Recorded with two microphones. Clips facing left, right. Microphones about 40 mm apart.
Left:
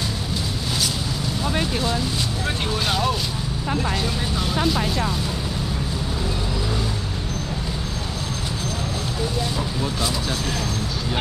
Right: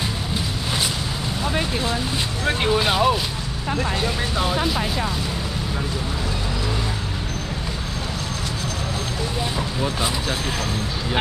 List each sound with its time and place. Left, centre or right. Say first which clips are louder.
2.4 s vehicle: right 7 dB; right
3.7 s speech: right 2 dB; centre
4.6 s speech: left 1 dB; centre